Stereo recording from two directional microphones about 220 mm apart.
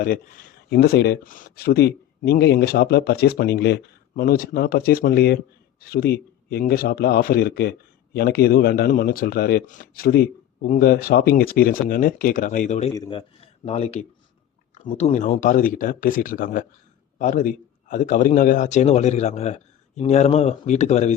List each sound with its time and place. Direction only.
0.7 s speech: 50° left (ahead or behind); by 12.9 s 35° left (ahead or behind)
12.9 s a man's voice: 20° left (ahead or behind)